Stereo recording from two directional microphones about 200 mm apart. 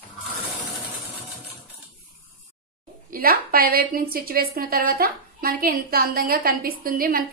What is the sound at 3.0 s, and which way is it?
A woman's voice, 45° right (ahead or behind).